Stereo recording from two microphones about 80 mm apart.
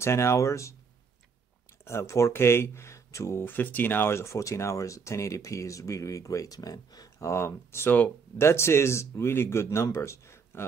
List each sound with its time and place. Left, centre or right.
0.0 s speech: left
1.9 s speech: left
7.2 s speech: left